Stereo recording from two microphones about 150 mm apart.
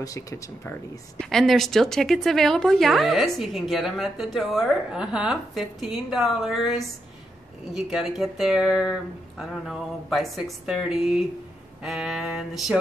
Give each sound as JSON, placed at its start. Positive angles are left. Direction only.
{"t": 0.0, "sound": "speech", "side_deg": 20}
{"t": 1.3, "sound": "a woman's voice", "side_deg": 0}